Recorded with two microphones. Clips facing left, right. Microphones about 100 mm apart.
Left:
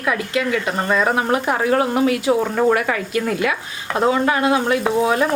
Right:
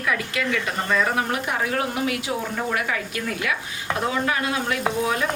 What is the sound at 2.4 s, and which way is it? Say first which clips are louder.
Speech: left 9 dB; 55° left (ahead or behind).